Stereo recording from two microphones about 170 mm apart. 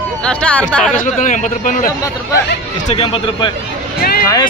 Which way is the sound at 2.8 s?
30° left (ahead or behind).